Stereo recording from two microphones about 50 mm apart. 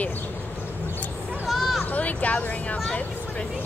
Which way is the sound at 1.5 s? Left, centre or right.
Centre.